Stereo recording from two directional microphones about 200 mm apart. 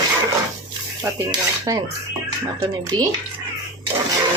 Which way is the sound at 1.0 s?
15° right (ahead or behind).